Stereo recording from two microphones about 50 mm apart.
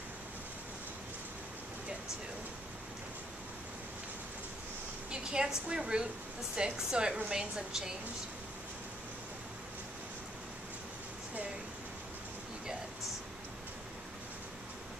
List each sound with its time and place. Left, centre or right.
5.1 s a woman's voice: centre